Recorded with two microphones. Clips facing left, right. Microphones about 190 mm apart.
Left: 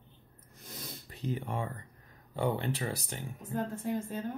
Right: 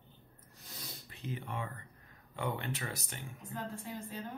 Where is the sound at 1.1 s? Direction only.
40° left (ahead or behind).